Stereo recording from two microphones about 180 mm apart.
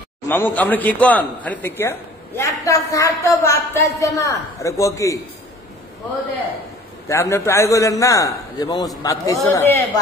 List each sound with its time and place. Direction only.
0.3 s speech: 10° left (ahead or behind)
7.1 s speech: 15° left (ahead or behind)